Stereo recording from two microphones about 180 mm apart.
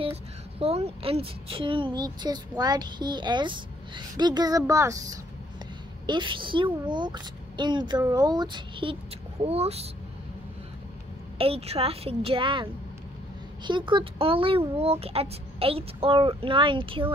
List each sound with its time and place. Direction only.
0.0 s a woman's voice: 35° right (ahead or behind)
11.3 s a child's voice: 30° right (ahead or behind)
13.7 s a child's voice: 25° right (ahead or behind)